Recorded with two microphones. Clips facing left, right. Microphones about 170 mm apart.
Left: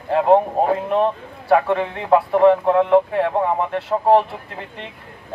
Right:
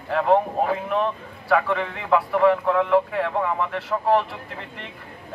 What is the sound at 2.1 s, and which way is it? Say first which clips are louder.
Speech: left 5 dB; 30° left (ahead or behind).